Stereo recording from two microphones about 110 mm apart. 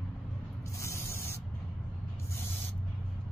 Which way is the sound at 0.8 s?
25° left (ahead or behind).